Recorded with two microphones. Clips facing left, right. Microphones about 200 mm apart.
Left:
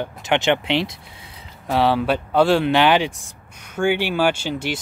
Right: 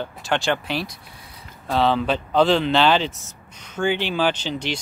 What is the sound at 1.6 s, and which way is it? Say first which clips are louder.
Speech: left 2 dB; 15° left (ahead or behind).